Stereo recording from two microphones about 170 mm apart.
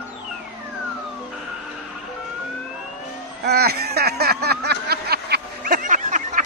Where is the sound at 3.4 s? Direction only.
70° right (ahead or behind).